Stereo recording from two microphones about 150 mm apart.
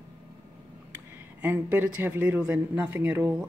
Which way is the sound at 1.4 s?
10° right (ahead or behind).